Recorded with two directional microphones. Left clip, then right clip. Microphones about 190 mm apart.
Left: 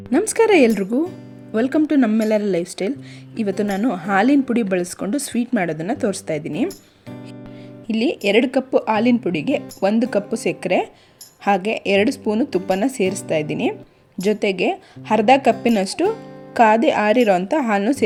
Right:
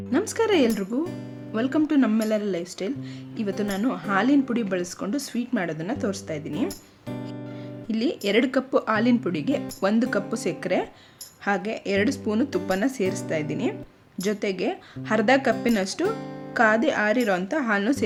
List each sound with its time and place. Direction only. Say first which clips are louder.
0.1 s speech: left 7 dB; 25° left (ahead or behind)
7.9 s speech: left 6 dB; 20° left (ahead or behind)